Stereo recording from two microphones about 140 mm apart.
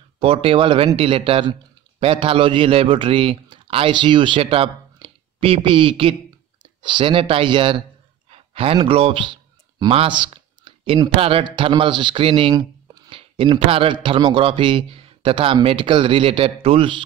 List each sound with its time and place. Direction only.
0.2 s a man's voice: 45° right (ahead or behind)
8.3 s a sound: 45° right (ahead or behind)
11.1 s a man's voice: 45° right (ahead or behind)